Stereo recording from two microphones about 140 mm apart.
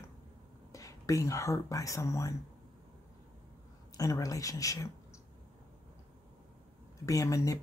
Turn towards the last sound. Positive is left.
turn(degrees=25)  # may be behind; listen again after turning